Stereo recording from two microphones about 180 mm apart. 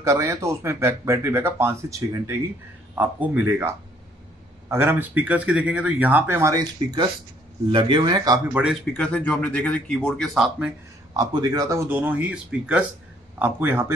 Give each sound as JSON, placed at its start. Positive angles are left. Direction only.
{"t": 0.0, "sound": "speech", "side_deg": -15}
{"t": 8.5, "sound": "speech", "side_deg": 0}
{"t": 11.1, "sound": "speech", "side_deg": -20}